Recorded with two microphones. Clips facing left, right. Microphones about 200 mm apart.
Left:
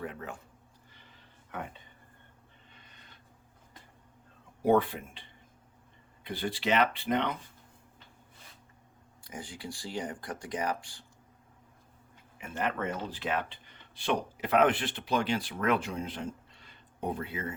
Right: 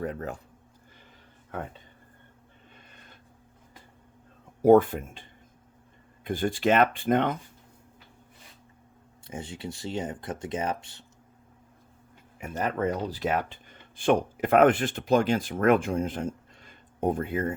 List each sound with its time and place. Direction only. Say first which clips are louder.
0.0 s speech: right 7 dB; 40° right (ahead or behind)
2.7 s a sound: right 5 dB; 50° right (ahead or behind)
4.6 s speech: right 8 dB; 45° right (ahead or behind)
9.2 s speech: right 5 dB; 25° right (ahead or behind)
12.4 s speech: right 5 dB; 40° right (ahead or behind)